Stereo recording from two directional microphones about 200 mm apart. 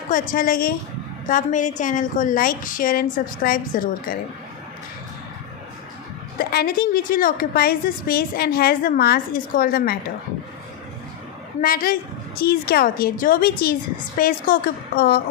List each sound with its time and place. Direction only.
0.1 s a woman's voice: 45° left (ahead or behind)
6.4 s a woman's voice: 50° left (ahead or behind)
11.6 s a woman's voice: 45° left (ahead or behind)